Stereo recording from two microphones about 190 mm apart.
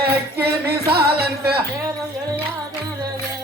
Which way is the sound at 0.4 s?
55° right (ahead or behind).